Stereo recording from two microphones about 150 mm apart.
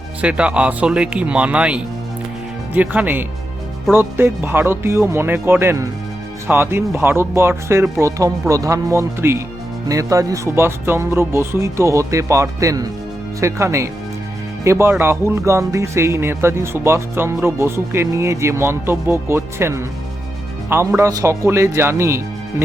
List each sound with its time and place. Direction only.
0.2 s speech: 10° right (ahead or behind)